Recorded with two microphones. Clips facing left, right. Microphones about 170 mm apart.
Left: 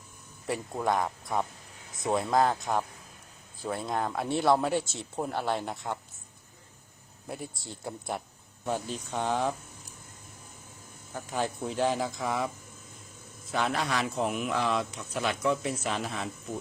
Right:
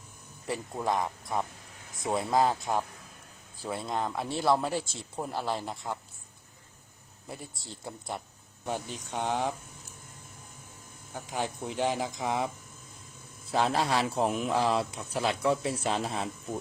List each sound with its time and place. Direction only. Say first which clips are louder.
0.4 s speech: left 2 dB; centre (ahead or behind)
7.3 s speech: left 4 dB; centre (ahead or behind)
8.6 s speech: left 3 dB; 15° right (ahead or behind)
11.1 s speech: left 2 dB; 10° right (ahead or behind)
13.5 s speech: right 2 dB; 30° right (ahead or behind)